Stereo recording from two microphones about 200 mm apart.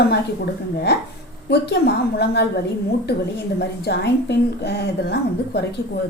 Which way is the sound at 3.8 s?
55° left (ahead or behind).